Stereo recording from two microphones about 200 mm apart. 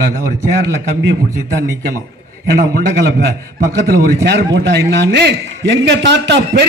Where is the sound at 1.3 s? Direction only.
15° right (ahead or behind).